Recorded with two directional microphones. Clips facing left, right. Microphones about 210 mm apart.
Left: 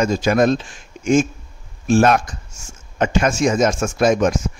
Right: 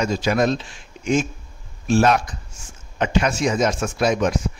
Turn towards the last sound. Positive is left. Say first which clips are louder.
# left 4 dB
turn(degrees=45)  # may be behind; listen again after turning